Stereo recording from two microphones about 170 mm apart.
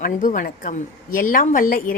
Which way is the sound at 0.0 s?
50° left (ahead or behind).